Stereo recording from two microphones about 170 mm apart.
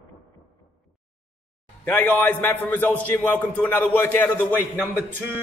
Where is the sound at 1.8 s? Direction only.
10° left (ahead or behind).